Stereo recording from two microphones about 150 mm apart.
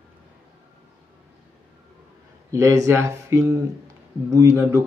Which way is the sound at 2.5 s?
20° right (ahead or behind).